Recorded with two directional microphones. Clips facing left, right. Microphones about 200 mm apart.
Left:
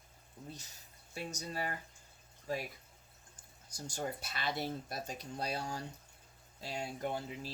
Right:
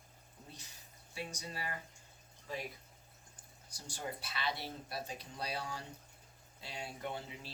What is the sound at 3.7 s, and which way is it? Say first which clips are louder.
Speech: left 4 dB; 45° left (ahead or behind).